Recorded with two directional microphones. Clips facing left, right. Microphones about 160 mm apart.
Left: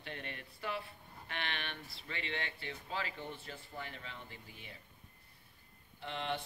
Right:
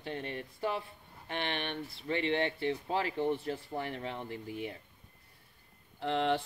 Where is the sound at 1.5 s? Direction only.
25° right (ahead or behind).